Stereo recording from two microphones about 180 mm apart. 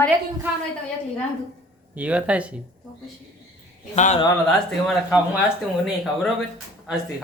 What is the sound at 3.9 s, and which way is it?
Speech, 40° left (ahead or behind).